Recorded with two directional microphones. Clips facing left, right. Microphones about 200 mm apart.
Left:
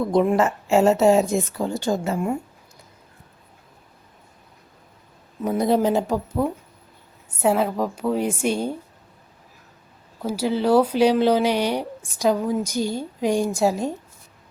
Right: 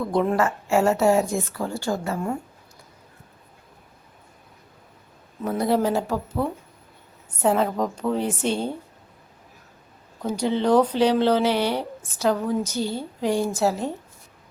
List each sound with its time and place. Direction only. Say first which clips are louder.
0.0 s speech: left 3 dB; 15° left (ahead or behind)
5.4 s speech: left 2 dB; 15° left (ahead or behind)
10.2 s speech: left 1 dB; 5° left (ahead or behind)